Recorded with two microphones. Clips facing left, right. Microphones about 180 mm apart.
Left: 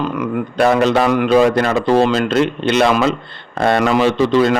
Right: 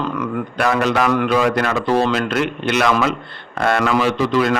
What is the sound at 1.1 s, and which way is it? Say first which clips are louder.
Speech: left 3 dB; 20° left (ahead or behind).